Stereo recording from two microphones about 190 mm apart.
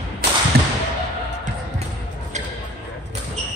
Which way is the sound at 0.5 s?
55° right (ahead or behind).